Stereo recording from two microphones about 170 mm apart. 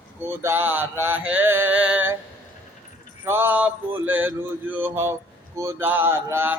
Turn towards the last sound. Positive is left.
turn(degrees=-15)  # may be behind; listen again after turning